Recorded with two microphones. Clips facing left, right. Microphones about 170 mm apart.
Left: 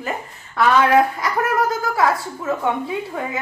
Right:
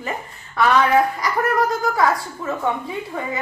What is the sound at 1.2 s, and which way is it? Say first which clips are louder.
Speech: even; centre (ahead or behind).